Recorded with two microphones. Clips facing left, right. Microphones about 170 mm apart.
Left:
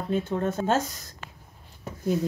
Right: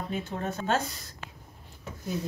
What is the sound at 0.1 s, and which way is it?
Speech, 50° left (ahead or behind).